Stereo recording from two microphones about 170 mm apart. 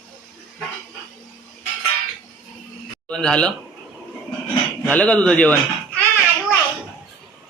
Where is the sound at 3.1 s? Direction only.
5° left (ahead or behind).